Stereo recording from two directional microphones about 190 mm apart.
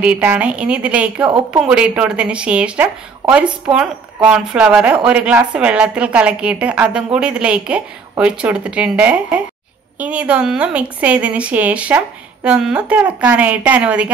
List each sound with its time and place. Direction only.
0.0 s a woman's voice: 10° right (ahead or behind)